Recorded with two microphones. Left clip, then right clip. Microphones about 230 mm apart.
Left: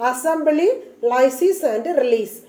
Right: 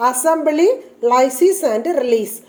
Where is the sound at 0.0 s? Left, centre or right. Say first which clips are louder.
Right 3 dB; right.